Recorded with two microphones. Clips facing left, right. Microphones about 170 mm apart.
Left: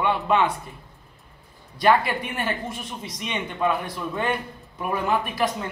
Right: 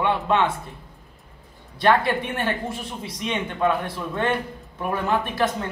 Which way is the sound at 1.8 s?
5° left (ahead or behind).